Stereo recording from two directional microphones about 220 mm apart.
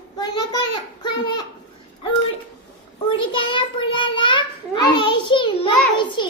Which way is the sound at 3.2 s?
25° left (ahead or behind).